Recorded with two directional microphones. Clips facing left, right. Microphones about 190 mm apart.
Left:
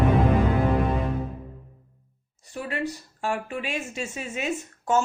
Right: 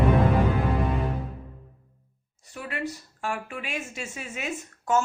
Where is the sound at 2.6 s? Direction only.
30° left (ahead or behind).